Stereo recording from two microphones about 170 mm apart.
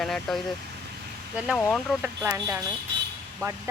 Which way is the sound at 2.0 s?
15° right (ahead or behind).